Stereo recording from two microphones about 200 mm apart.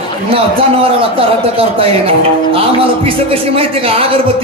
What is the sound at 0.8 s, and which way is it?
Speech, 30° right (ahead or behind).